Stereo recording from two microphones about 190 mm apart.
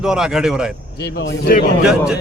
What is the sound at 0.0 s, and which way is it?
Speech, 5° right (ahead or behind).